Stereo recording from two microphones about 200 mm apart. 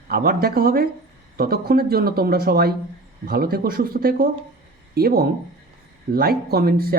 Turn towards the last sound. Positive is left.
turn(degrees=-50)  # may be behind; listen again after turning